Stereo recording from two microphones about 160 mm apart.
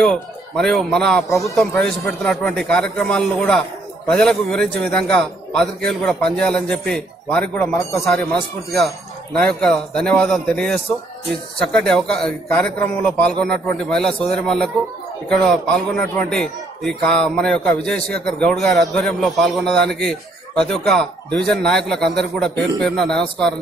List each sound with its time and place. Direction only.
0.0 s a man's voice: 5° left (ahead or behind)
7.7 s a man's voice: 20° left (ahead or behind)
9.6 s a man's voice: 5° left (ahead or behind)